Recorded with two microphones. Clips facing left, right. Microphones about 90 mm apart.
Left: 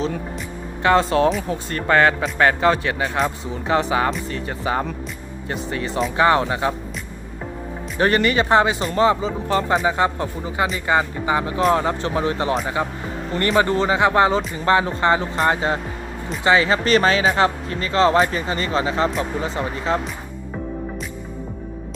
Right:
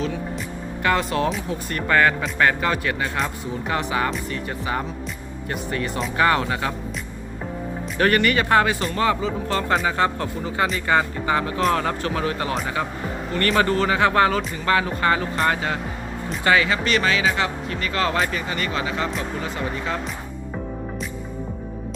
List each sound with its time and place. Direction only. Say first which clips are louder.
0.8 s speech: left 5 dB; 30° left (ahead or behind)
7.9 s speech: left 1 dB; 25° left (ahead or behind)
16.6 s speech: left 4 dB; 35° left (ahead or behind)